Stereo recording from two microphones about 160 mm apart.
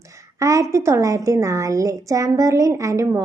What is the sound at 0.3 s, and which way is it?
A woman's voice, 20° right (ahead or behind).